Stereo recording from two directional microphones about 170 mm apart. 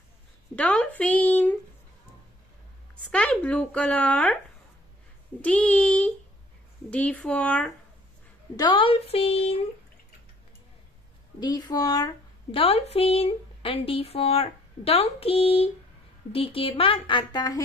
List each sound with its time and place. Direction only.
0.6 s speech: 10° left (ahead or behind)
3.1 s speech: 5° left (ahead or behind)
5.4 s speech: 10° left (ahead or behind)
8.5 s speech: 30° left (ahead or behind)
11.3 s speech: 25° left (ahead or behind)